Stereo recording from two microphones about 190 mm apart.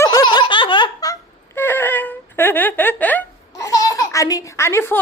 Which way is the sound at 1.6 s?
10° left (ahead or behind).